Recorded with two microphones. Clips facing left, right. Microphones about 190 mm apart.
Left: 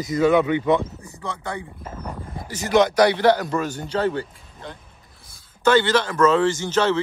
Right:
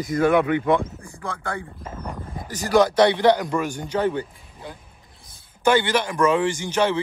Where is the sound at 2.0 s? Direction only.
10° left (ahead or behind).